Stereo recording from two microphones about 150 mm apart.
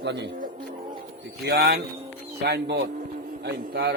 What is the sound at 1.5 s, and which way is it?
Speech, 90° right.